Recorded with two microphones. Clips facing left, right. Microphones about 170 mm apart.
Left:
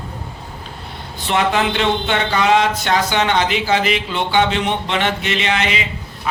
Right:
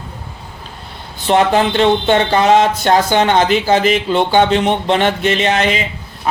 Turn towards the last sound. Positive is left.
turn(degrees=-40)  # may be behind; listen again after turning